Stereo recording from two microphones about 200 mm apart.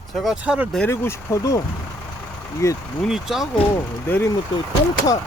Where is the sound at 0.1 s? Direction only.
Centre (ahead or behind).